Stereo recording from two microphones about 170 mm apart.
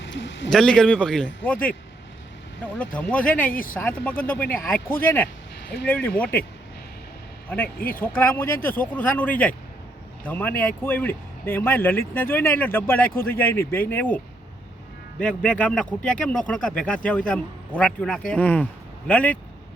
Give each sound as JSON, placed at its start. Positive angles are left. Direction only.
{"t": 0.0, "sound": "a sound", "side_deg": 90}
{"t": 0.5, "sound": "a man's voice", "side_deg": 5}
{"t": 2.7, "sound": "speech", "side_deg": 10}
{"t": 3.5, "sound": "speech", "side_deg": 55}
{"t": 3.8, "sound": "speech", "side_deg": 10}
{"t": 7.8, "sound": "speech", "side_deg": 60}
{"t": 8.0, "sound": "speech", "side_deg": 10}
{"t": 15.2, "sound": "speech", "side_deg": 5}